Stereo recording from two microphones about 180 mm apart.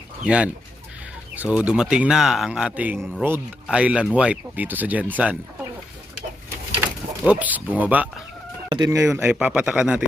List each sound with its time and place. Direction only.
0.3 s speech: 5° right (ahead or behind)
3.2 s speech: 10° right (ahead or behind)
6.8 s speech: 10° right (ahead or behind)
8.7 s speech: 20° right (ahead or behind)
9.1 s speech: 5° right (ahead or behind)